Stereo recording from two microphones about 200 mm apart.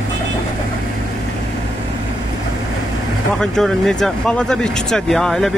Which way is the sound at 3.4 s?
Centre (ahead or behind).